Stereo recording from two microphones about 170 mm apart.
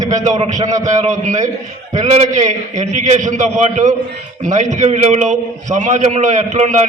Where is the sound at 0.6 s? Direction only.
20° right (ahead or behind).